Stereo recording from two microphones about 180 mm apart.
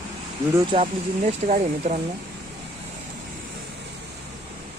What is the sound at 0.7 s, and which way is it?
Speech, 40° right (ahead or behind).